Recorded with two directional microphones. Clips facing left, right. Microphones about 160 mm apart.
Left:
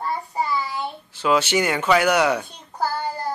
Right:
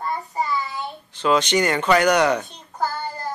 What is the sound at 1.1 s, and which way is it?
A child's voice, 10° left (ahead or behind).